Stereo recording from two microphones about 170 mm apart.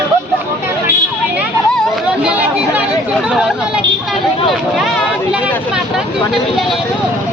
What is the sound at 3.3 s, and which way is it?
Speech, 5° right (ahead or behind).